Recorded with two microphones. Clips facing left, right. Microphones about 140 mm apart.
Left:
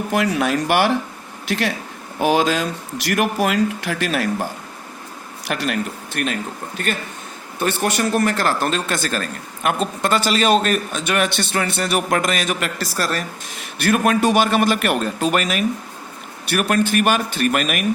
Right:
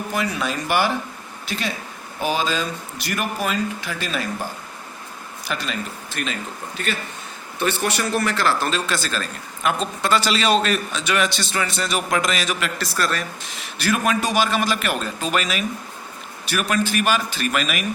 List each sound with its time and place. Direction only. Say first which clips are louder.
0.1 s speech: left 6 dB; 70° left (ahead or behind)
5.5 s a man's voice: left 5 dB; 70° left (ahead or behind); by 13.2 s 40° left (ahead or behind)
13.7 s a man's voice: left 4 dB; 55° left (ahead or behind)